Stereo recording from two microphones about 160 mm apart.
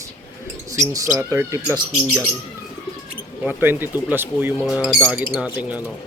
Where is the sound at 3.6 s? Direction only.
15° right (ahead or behind).